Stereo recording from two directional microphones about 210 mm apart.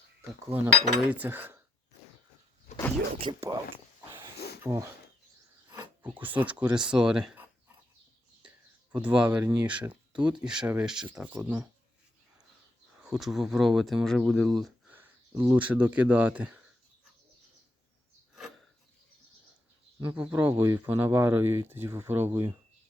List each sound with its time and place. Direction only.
0.2 s speech: 10° right (ahead or behind)
3.2 s speech: 20° right (ahead or behind)
4.4 s a sound: 50° left (ahead or behind)
4.6 s speech: 15° right (ahead or behind)
13.0 s speech: centre (ahead or behind)
20.0 s speech: 5° right (ahead or behind)